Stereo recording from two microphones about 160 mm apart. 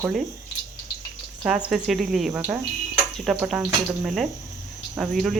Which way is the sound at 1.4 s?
5° right (ahead or behind).